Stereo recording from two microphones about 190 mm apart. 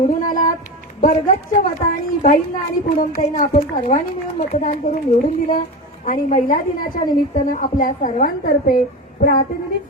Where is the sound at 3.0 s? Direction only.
45° left (ahead or behind).